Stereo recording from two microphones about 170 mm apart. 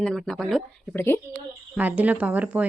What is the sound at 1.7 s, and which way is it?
Speech, 10° right (ahead or behind).